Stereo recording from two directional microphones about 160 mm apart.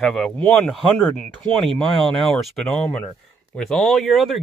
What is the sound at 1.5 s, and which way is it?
Speech, 30° right (ahead or behind).